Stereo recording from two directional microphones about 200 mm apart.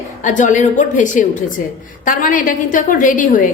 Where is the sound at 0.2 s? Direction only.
40° left (ahead or behind).